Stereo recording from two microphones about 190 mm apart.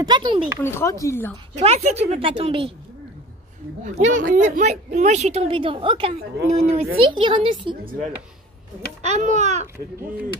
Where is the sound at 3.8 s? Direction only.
40° right (ahead or behind).